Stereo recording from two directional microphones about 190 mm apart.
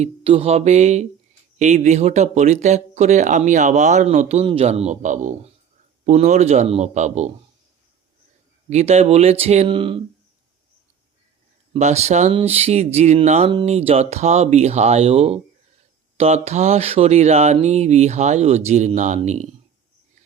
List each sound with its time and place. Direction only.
0.0 s speech: 30° right (ahead or behind)
8.7 s speech: 35° right (ahead or behind)
11.7 s speech: 35° right (ahead or behind)